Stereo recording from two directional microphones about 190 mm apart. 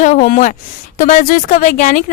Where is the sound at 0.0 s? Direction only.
45° left (ahead or behind).